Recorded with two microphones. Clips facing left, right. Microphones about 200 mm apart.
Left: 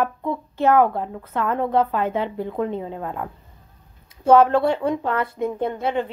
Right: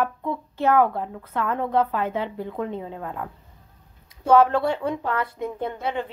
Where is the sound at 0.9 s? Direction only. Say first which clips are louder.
Left 2 dB; 30° left (ahead or behind).